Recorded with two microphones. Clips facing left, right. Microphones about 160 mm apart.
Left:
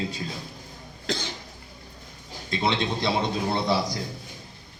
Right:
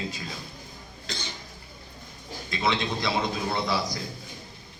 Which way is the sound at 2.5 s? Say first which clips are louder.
Left 2 dB; 30° left (ahead or behind).